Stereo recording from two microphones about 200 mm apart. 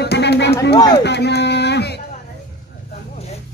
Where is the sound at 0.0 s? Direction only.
55° left (ahead or behind).